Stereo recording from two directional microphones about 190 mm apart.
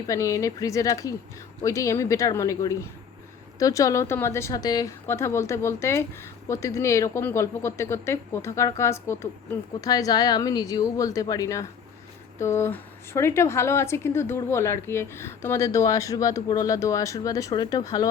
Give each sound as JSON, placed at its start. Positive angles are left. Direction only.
{"t": 0.1, "sound": "a woman's voice", "side_deg": 15}